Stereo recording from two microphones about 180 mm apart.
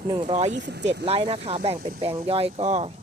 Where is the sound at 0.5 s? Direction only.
75° right (ahead or behind).